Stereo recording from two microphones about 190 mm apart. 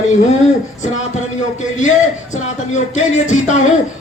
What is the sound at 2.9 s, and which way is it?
Speech, 40° left (ahead or behind).